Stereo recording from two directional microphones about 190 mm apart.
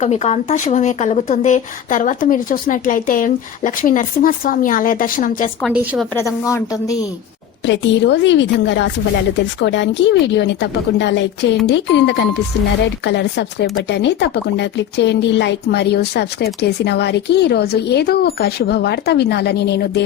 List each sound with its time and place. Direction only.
0.0 s speech: 35° left (ahead or behind)
5.6 s a woman's voice: 5° right (ahead or behind)
6.1 s a woman's voice: 15° left (ahead or behind)
7.6 s a woman's voice: 65° left (ahead or behind)